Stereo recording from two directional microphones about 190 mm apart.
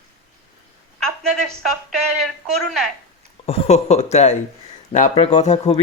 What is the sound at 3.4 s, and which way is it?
Speech, 30° left (ahead or behind).